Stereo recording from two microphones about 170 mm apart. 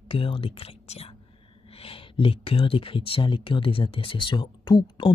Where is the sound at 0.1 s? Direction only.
30° left (ahead or behind).